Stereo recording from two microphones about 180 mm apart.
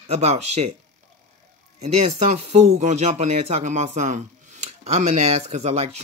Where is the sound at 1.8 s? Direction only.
40° right (ahead or behind).